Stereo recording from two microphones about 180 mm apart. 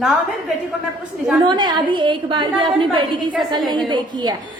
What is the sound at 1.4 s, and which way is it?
A woman's voice, 25° right (ahead or behind).